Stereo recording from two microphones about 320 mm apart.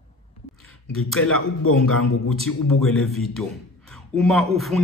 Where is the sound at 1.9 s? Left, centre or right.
Left.